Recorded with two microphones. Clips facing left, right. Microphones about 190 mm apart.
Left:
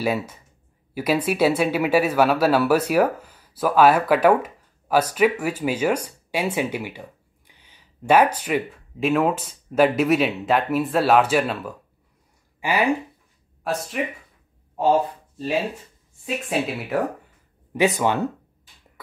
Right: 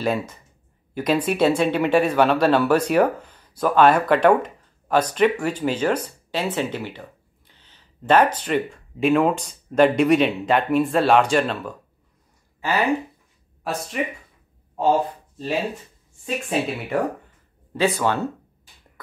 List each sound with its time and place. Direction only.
0.0 s speech: 5° left (ahead or behind)
12.5 s a sound: 15° left (ahead or behind)
13.7 s speech: centre (ahead or behind)
16.4 s speech: centre (ahead or behind)
17.7 s speech: 15° left (ahead or behind)